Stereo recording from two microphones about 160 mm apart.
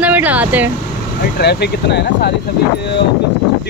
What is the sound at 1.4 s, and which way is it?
Speech, 90° left.